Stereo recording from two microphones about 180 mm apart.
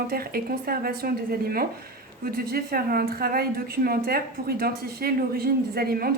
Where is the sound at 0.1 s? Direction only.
55° right (ahead or behind).